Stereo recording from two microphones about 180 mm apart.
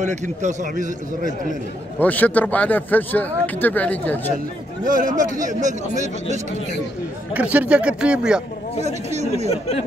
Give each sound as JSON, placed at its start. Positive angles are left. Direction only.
{"t": 0.0, "sound": "speech", "side_deg": -40}
{"t": 2.0, "sound": "speech", "side_deg": 10}
{"t": 4.8, "sound": "speech", "side_deg": -50}
{"t": 7.3, "sound": "speech", "side_deg": -5}
{"t": 8.8, "sound": "speech", "side_deg": -40}
{"t": 9.5, "sound": "speech", "side_deg": 35}